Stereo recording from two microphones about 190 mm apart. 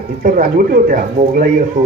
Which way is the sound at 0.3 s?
45° right (ahead or behind).